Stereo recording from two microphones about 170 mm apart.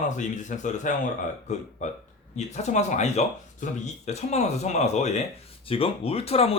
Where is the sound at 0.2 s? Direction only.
45° left (ahead or behind).